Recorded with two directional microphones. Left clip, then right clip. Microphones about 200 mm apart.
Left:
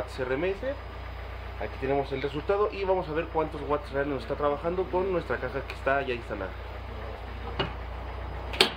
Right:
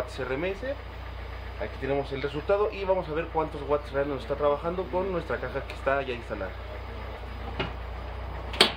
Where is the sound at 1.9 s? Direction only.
10° left (ahead or behind).